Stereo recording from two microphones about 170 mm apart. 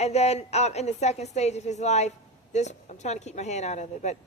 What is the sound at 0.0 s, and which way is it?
A woman's voice, 40° left (ahead or behind).